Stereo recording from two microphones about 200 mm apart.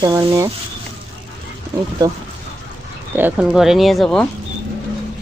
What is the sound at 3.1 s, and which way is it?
Speech, 5° right (ahead or behind).